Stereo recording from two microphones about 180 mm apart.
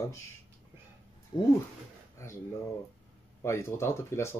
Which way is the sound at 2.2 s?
15° left (ahead or behind).